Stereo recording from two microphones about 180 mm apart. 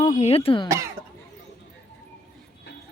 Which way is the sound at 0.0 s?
40° left (ahead or behind).